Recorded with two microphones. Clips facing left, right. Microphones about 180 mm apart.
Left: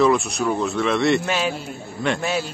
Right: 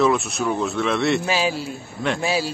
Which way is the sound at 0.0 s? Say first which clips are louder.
Left 1 dB; centre (ahead or behind).